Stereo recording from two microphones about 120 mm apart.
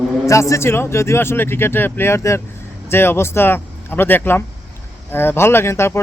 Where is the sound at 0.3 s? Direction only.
25° left (ahead or behind).